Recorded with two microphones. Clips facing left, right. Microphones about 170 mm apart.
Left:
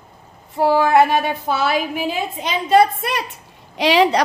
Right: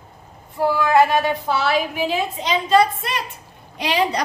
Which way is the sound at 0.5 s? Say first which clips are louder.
Left 3 dB; 70° left (ahead or behind).